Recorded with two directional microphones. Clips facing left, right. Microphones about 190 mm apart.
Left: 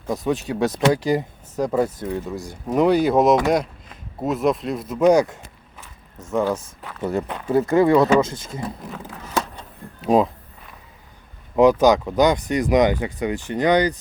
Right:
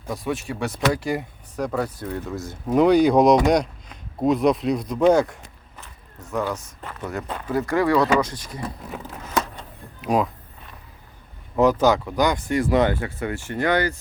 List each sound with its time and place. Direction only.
0.1 s speech: 20° left (ahead or behind)
2.7 s speech: 5° left (ahead or behind)
6.3 s speech: 25° left (ahead or behind)
10.0 s speech: 25° left (ahead or behind)
11.5 s speech: 15° left (ahead or behind)